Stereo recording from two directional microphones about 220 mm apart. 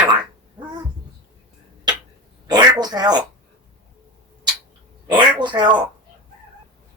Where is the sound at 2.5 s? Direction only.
20° right (ahead or behind).